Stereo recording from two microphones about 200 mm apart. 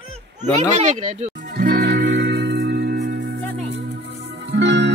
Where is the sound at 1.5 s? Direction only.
55° right (ahead or behind).